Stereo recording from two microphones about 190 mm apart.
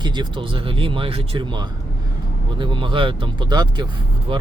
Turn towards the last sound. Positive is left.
turn(degrees=-25)  # may be behind; listen again after turning